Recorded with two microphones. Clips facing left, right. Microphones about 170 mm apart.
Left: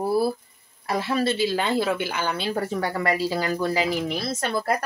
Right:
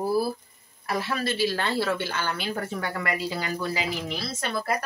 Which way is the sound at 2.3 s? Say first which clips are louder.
Left 5 dB; 35° left (ahead or behind).